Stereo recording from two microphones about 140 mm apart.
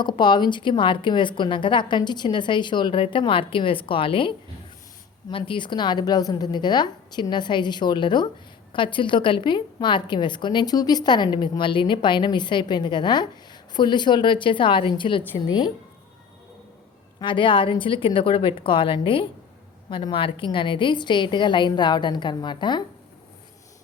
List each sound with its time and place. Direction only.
0.0 s a woman's voice: 35° left (ahead or behind)
17.2 s a woman's voice: 35° left (ahead or behind)